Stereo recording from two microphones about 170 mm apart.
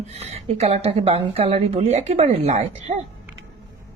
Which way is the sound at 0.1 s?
40° right (ahead or behind).